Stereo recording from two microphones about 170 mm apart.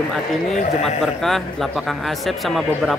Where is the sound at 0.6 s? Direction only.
40° left (ahead or behind).